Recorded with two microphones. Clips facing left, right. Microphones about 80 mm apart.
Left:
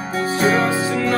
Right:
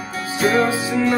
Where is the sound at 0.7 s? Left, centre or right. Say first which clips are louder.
Even; centre.